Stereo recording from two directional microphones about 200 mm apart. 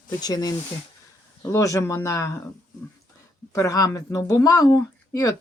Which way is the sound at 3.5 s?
15° left (ahead or behind).